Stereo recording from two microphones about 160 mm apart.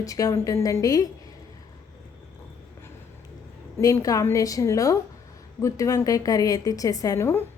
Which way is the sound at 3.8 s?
20° left (ahead or behind).